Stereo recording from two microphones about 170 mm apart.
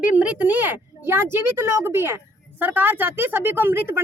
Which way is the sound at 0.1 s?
10° right (ahead or behind).